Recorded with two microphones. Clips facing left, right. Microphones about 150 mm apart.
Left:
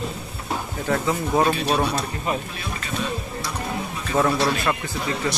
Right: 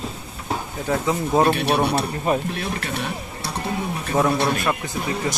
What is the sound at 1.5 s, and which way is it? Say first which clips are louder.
Speech: right 2 dB; 65° right (ahead or behind).